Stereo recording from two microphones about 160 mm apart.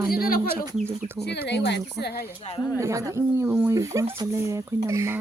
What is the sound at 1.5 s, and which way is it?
Speech, 90° left.